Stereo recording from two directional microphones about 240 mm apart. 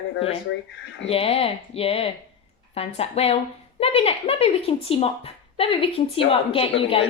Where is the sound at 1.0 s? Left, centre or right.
Left.